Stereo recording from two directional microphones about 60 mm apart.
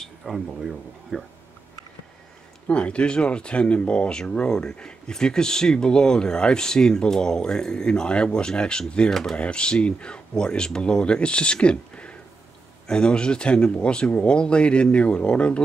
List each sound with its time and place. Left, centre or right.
0.0 s speech: centre
2.7 s speech: centre
9.1 s speech: centre
9.4 s speech: centre